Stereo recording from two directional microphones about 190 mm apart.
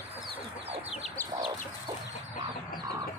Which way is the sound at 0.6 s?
30° right (ahead or behind).